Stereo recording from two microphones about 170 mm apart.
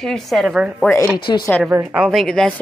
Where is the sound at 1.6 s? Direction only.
5° right (ahead or behind).